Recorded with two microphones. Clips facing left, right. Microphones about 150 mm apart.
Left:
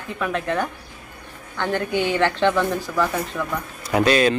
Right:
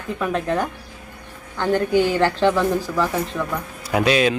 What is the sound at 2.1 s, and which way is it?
Speech, 35° right (ahead or behind).